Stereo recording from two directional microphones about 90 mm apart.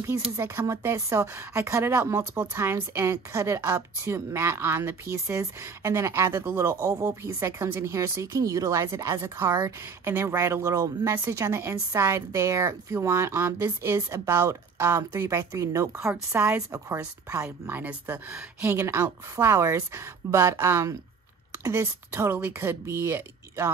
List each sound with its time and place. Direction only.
0.4 s speech: 30° right (ahead or behind)